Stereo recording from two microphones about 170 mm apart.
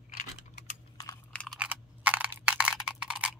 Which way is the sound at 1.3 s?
5° left (ahead or behind).